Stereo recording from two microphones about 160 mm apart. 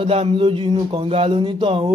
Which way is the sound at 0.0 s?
35° right (ahead or behind).